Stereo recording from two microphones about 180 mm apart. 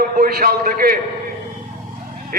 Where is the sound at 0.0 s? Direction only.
55° right (ahead or behind).